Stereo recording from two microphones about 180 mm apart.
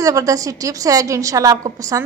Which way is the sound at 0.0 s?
20° right (ahead or behind).